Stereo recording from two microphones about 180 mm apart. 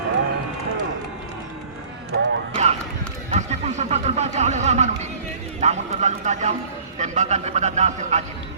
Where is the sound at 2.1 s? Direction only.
75° right (ahead or behind).